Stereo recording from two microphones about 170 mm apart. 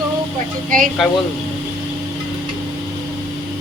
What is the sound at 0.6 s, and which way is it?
Speech, 55° right (ahead or behind).